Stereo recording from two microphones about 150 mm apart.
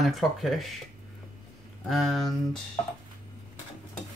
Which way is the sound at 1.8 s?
Centre (ahead or behind).